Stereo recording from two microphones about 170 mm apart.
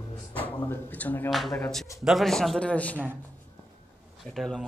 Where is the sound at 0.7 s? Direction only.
10° left (ahead or behind).